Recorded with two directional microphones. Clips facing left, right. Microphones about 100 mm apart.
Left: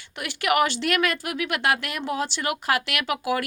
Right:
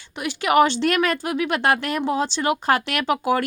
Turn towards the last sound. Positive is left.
turn(degrees=-35)  # may be behind; listen again after turning